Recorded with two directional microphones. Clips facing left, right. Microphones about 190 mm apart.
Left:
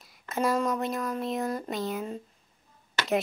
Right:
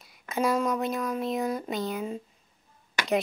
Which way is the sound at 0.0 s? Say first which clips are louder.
Right 1 dB; centre (ahead or behind).